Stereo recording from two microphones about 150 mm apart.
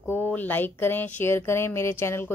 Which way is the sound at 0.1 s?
15° left (ahead or behind).